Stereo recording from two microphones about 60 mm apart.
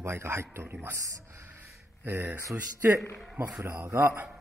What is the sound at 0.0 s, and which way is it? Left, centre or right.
Speech, right.